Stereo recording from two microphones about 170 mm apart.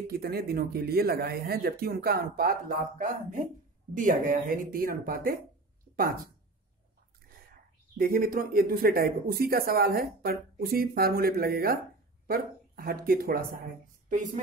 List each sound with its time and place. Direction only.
0.1 s speech: 65° right (ahead or behind)
8.0 s a woman's voice: 60° right (ahead or behind)